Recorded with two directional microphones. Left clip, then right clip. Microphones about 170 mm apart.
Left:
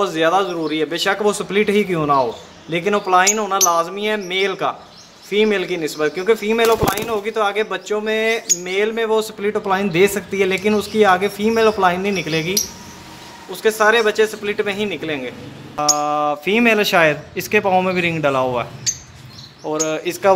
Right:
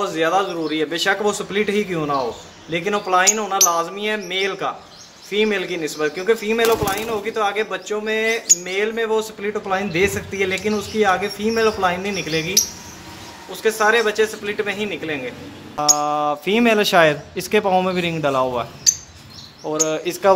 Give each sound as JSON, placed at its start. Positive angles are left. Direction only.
{"t": 0.0, "sound": "speech", "side_deg": 30}
{"t": 15.7, "sound": "speech", "side_deg": -5}